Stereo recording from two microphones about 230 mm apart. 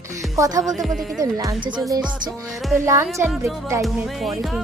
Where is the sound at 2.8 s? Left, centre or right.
Centre.